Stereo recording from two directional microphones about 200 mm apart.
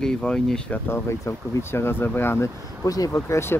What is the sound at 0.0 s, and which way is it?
Speech, 5° left (ahead or behind).